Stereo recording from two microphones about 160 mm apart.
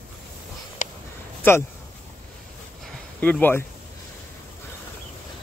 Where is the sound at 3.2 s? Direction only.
10° left (ahead or behind).